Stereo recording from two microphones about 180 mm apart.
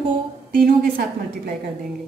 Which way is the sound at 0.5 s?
50° right (ahead or behind).